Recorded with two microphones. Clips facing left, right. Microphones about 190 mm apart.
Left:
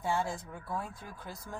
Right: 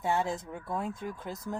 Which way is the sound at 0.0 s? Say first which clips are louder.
Right 3 dB; 20° right (ahead or behind).